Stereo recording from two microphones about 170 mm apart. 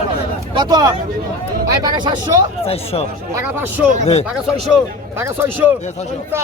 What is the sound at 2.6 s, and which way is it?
Speech, 35° left (ahead or behind).